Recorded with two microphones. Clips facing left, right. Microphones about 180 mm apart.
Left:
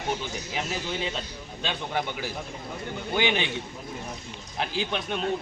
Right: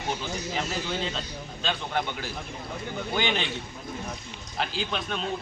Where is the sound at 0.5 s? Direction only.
10° left (ahead or behind).